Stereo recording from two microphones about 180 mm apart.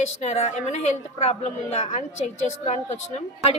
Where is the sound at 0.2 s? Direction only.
40° left (ahead or behind).